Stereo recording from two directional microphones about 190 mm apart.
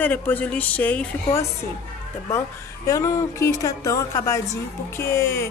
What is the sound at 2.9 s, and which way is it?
A woman's voice, 15° left (ahead or behind).